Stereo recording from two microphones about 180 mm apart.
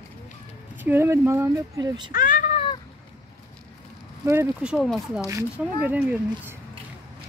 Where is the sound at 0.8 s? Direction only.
15° right (ahead or behind).